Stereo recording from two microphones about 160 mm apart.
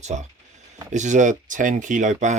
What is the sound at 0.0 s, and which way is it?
Speech, 45° right (ahead or behind).